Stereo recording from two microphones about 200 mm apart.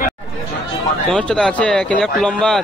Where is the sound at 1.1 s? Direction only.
5° left (ahead or behind).